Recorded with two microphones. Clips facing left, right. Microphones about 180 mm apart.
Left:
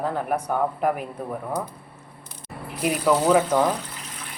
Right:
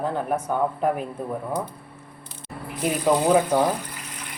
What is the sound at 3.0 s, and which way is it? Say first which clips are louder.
Speech: even; 15° right (ahead or behind).